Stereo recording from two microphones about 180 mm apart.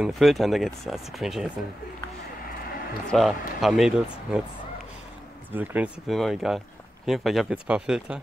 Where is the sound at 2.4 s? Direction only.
55° left (ahead or behind).